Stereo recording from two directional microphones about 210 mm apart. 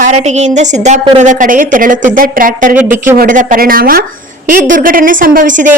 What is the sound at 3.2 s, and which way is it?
Speech, 40° right (ahead or behind).